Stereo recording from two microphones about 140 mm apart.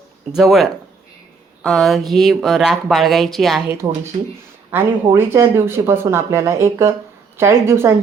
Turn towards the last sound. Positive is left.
turn(degrees=-20)  # may be behind; listen again after turning